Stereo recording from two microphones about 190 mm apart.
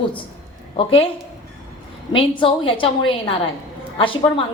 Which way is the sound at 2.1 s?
25° left (ahead or behind).